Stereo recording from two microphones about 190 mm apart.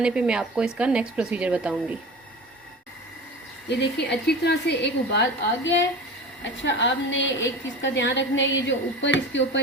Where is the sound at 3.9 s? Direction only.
60° left (ahead or behind).